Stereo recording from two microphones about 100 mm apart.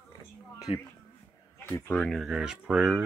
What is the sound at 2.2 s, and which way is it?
Speech, 5° right (ahead or behind).